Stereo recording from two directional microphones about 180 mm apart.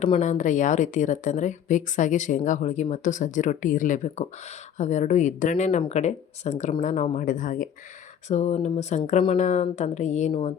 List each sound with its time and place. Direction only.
0.0 s a woman's voice: 40° left (ahead or behind)